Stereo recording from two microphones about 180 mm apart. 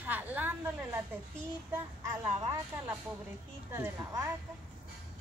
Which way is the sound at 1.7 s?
10° right (ahead or behind).